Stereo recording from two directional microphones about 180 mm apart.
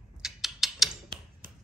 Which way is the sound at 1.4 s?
50° right (ahead or behind).